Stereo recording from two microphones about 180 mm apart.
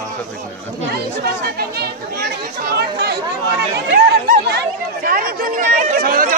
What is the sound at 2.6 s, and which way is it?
Chatter, 65° right (ahead or behind).